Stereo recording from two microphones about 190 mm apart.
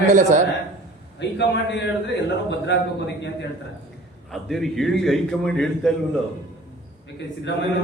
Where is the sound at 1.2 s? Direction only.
65° left (ahead or behind).